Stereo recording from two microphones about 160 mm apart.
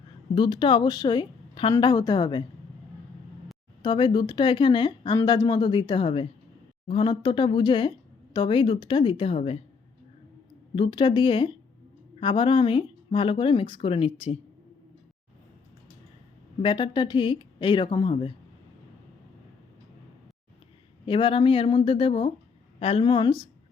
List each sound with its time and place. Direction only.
0.3 s speech: 30° left (ahead or behind)
3.8 s a woman's voice: 30° left (ahead or behind)
10.8 s a woman's voice: 30° left (ahead or behind)
16.6 s speech: 30° left (ahead or behind)
21.1 s a woman's voice: 30° left (ahead or behind)